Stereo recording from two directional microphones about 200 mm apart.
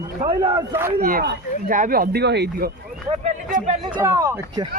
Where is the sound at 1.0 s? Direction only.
45° right (ahead or behind).